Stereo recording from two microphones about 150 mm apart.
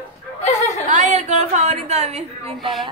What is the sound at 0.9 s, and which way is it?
A woman's voice, 55° right (ahead or behind).